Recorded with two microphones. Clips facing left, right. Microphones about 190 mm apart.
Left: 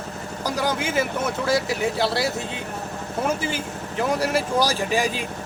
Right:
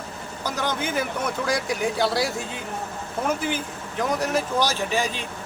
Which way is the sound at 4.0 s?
10° left (ahead or behind).